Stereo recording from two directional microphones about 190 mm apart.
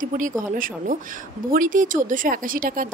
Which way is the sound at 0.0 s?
45° right (ahead or behind).